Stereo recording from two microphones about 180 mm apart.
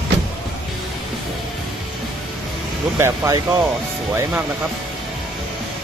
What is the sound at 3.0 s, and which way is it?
Speech, 20° right (ahead or behind).